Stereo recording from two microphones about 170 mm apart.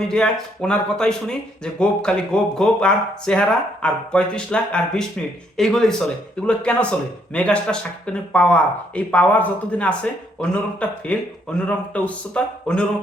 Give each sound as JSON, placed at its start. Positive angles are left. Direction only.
{"t": 0.1, "sound": "speech", "side_deg": 5}